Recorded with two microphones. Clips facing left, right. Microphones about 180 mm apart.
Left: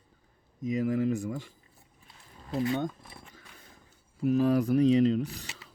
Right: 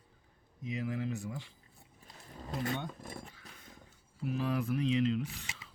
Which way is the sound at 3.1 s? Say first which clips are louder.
Right 5 dB; 45° right (ahead or behind).